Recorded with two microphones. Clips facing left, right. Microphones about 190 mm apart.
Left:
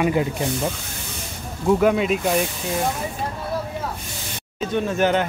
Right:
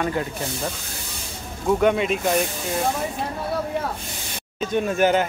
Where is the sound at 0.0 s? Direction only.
15° left (ahead or behind).